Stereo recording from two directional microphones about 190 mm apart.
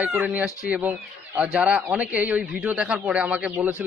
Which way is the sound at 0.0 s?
10° right (ahead or behind).